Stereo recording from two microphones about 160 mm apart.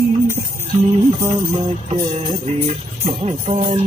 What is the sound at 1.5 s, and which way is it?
Music, 40° right (ahead or behind).